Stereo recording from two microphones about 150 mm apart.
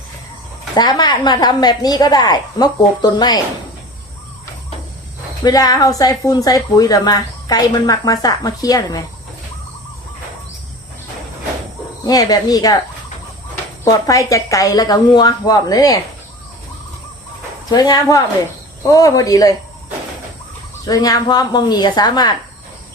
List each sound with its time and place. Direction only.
0.8 s a woman's voice: 30° left (ahead or behind)
5.4 s a woman's voice: 25° left (ahead or behind)
12.0 s a woman's voice: 25° left (ahead or behind)
13.8 s a woman's voice: 20° left (ahead or behind)
17.7 s a woman's voice: 25° left (ahead or behind)
20.8 s a woman's voice: 25° left (ahead or behind)